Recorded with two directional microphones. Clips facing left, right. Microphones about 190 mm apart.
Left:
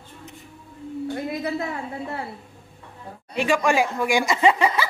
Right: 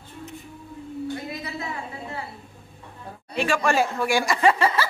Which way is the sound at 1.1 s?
55° left (ahead or behind).